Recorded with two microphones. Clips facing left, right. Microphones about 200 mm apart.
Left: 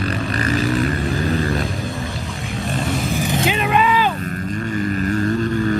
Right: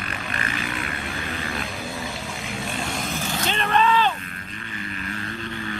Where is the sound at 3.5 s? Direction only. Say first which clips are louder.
Even; 10° left (ahead or behind).